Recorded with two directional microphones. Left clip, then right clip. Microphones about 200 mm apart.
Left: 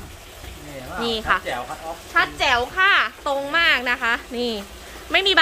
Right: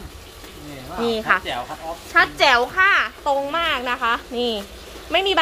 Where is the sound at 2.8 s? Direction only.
10° left (ahead or behind).